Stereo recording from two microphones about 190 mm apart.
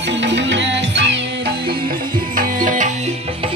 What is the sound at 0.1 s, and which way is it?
Music, 70° right (ahead or behind).